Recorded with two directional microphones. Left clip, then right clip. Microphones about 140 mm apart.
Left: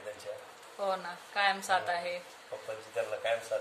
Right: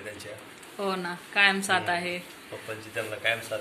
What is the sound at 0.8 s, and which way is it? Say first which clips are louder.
A woman's voice: right 3 dB; 15° right (ahead or behind).